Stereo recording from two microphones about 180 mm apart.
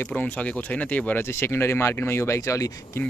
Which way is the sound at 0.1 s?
10° left (ahead or behind).